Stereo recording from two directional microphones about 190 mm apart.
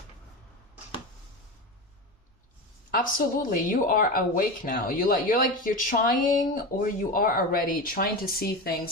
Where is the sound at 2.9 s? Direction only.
45° left (ahead or behind).